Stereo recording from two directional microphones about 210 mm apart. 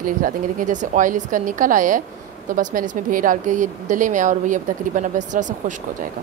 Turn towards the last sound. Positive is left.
turn(degrees=-35)  # may be behind; listen again after turning